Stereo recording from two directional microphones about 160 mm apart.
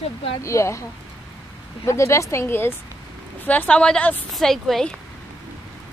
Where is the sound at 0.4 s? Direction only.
20° left (ahead or behind).